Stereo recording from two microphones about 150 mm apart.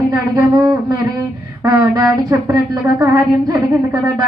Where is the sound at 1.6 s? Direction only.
20° right (ahead or behind).